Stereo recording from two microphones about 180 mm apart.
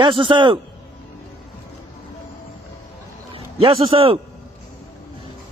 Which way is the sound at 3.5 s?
30° right (ahead or behind).